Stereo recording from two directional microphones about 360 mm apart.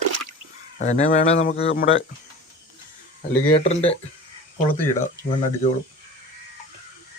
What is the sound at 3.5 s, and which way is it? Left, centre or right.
Speech, centre.